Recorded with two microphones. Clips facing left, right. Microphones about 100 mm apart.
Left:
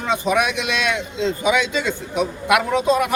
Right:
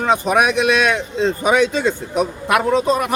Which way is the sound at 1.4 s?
45° right (ahead or behind).